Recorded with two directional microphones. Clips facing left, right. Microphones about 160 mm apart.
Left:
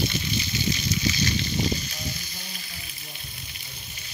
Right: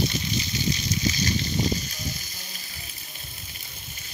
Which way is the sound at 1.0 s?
40° right (ahead or behind).